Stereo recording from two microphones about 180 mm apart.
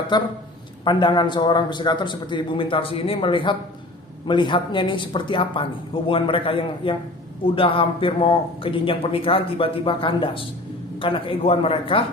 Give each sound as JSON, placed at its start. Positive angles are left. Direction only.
{"t": 0.1, "sound": "a man's voice", "side_deg": 25}